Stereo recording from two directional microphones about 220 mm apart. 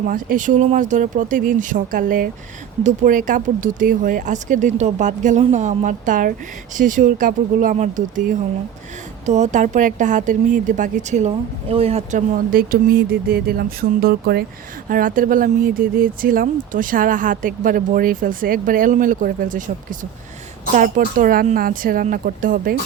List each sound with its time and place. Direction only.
0.1 s speech: 35° right (ahead or behind)
12.5 s a sound: 40° right (ahead or behind)
14.8 s speech: 40° right (ahead or behind)